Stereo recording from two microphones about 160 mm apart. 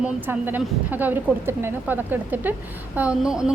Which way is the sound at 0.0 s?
10° right (ahead or behind).